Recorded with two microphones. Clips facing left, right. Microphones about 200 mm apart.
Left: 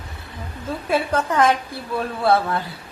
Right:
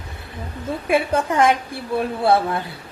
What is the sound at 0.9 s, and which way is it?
A woman's voice, 15° right (ahead or behind).